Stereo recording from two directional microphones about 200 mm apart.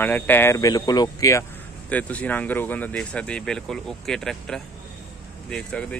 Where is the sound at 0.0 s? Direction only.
10° left (ahead or behind).